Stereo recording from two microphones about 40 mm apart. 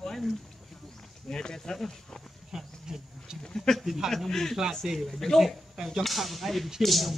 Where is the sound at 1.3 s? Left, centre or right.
Centre.